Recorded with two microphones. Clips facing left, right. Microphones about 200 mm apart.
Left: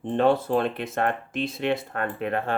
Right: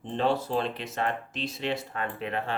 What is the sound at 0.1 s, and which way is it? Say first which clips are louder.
Speech: left 6 dB; 55° left (ahead or behind).